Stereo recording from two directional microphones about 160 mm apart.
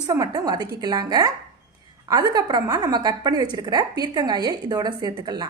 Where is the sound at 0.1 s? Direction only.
25° right (ahead or behind).